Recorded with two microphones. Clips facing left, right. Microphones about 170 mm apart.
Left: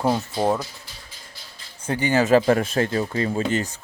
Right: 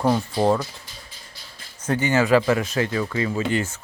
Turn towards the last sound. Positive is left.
turn(degrees=35)  # may be behind; listen again after turning